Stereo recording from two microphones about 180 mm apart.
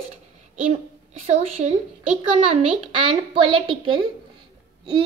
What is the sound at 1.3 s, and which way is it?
A child's voice, 40° right (ahead or behind).